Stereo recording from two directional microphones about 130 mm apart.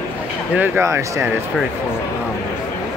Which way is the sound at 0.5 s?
20° right (ahead or behind).